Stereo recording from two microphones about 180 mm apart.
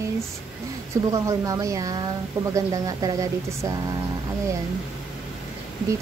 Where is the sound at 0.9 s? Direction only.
15° right (ahead or behind).